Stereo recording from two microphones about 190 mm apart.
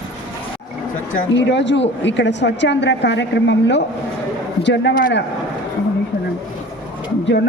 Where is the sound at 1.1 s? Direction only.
70° left (ahead or behind).